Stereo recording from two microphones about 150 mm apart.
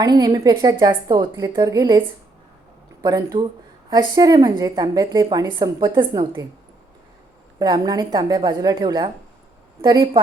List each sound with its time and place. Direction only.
0.0 s a woman's voice: 25° right (ahead or behind)
7.6 s a woman's voice: 30° right (ahead or behind)